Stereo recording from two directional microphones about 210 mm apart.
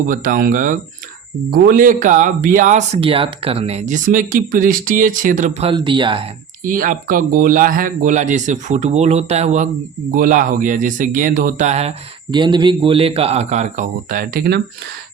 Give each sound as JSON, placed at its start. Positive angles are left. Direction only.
{"t": 0.1, "sound": "speech", "side_deg": -40}
{"t": 6.7, "sound": "speech", "side_deg": -40}